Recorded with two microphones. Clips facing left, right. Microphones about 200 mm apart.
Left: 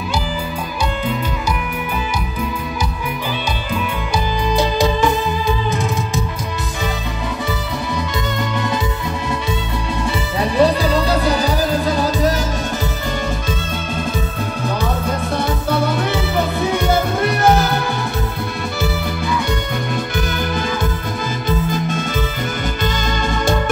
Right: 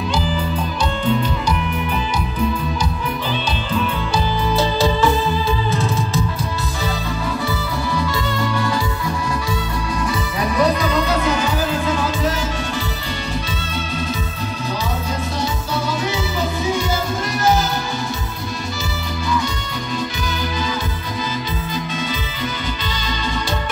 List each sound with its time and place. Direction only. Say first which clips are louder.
4.5 s music: left 2 dB; 15° left (ahead or behind)
10.4 s music: left 3 dB; 30° left (ahead or behind)
15.7 s music: left 5 dB; 55° left (ahead or behind)
20.2 s music: left 4 dB; 55° left (ahead or behind)
21.5 s music: left 6 dB; 50° left (ahead or behind)
23.3 s music: left 8 dB; 50° left (ahead or behind)